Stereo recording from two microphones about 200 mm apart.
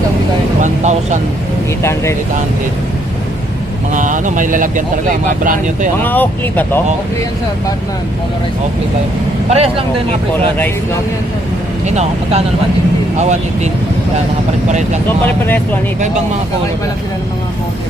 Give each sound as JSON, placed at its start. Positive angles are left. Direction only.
{"t": 0.6, "sound": "vehicle", "side_deg": -35}
{"t": 1.8, "sound": "speech", "side_deg": 15}
{"t": 3.9, "sound": "speech", "side_deg": -40}
{"t": 6.0, "sound": "speech", "side_deg": 10}
{"t": 9.5, "sound": "speech", "side_deg": -30}
{"t": 11.9, "sound": "speech", "side_deg": -35}
{"t": 15.4, "sound": "speech", "side_deg": 10}